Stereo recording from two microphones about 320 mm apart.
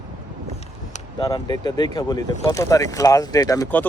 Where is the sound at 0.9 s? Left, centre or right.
Centre.